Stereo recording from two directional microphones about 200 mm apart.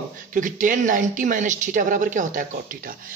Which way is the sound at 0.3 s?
40° right (ahead or behind).